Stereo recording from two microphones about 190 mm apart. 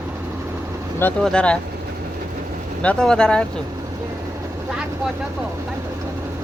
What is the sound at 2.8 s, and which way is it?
Speech, 5° left (ahead or behind).